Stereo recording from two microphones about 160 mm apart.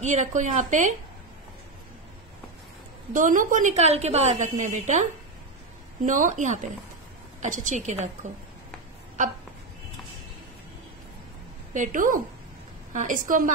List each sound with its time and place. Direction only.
0.0 s a woman's voice: 50° right (ahead or behind)
3.1 s a woman's voice: 55° right (ahead or behind)
6.0 s a woman's voice: 50° right (ahead or behind)
11.7 s a woman's voice: 55° right (ahead or behind)